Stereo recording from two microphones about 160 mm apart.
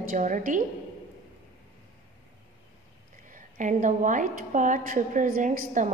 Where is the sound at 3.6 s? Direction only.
50° right (ahead or behind).